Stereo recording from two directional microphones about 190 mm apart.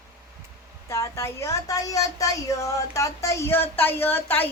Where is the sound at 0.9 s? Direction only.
15° left (ahead or behind).